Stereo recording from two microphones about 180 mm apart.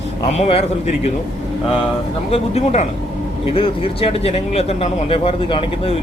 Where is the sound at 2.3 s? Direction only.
35° left (ahead or behind).